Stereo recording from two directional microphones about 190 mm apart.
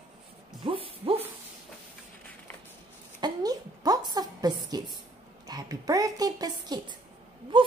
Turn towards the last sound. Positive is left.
turn(degrees=-25)  # may be behind; listen again after turning